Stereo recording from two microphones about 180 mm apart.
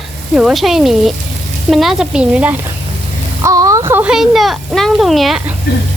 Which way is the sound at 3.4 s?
20° right (ahead or behind).